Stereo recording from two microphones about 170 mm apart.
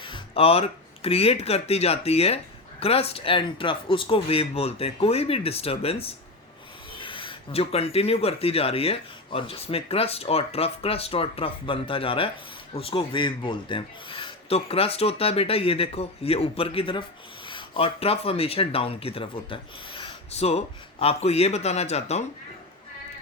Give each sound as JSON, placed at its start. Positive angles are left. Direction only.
{"t": 0.0, "sound": "speech", "side_deg": 35}